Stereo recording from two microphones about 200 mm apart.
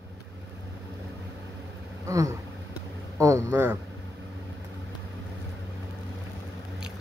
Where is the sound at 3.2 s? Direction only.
15° right (ahead or behind).